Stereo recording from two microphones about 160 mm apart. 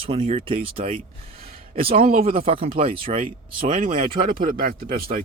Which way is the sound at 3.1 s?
55° right (ahead or behind).